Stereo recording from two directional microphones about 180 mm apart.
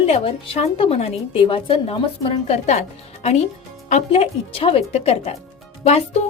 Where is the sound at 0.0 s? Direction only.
35° left (ahead or behind).